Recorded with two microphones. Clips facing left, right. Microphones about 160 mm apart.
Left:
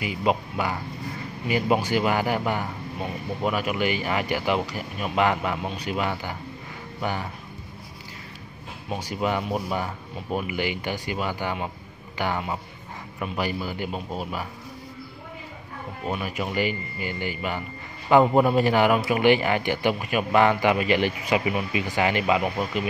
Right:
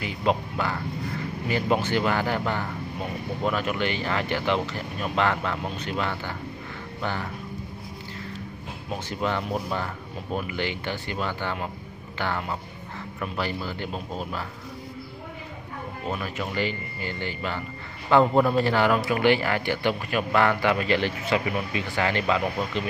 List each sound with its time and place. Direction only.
0.0 s a man's voice: 10° left (ahead or behind)
9.1 s a man's voice: 10° left (ahead or behind)
16.1 s a man's voice: 15° left (ahead or behind)